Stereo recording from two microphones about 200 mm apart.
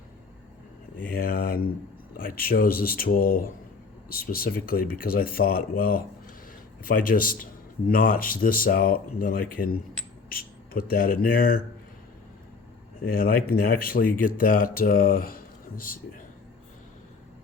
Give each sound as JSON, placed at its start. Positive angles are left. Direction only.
{"t": 1.0, "sound": "speech", "side_deg": 45}
{"t": 13.1, "sound": "speech", "side_deg": 45}